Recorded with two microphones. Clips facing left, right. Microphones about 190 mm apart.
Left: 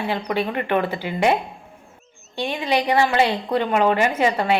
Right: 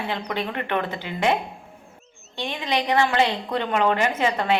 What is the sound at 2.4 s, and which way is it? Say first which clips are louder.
A woman's voice: left 4 dB; 10° left (ahead or behind).